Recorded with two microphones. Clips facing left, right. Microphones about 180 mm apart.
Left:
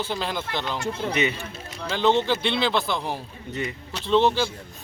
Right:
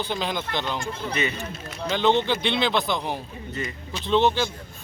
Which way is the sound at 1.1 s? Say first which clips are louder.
Left 2 dB; 15° left (ahead or behind).